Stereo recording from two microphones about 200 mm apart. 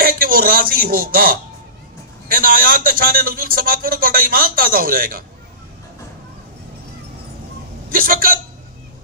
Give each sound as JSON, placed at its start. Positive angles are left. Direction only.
{"t": 0.0, "sound": "a sound", "side_deg": -45}
{"t": 2.2, "sound": "a man's voice", "side_deg": -45}
{"t": 7.9, "sound": "a man's voice", "side_deg": -45}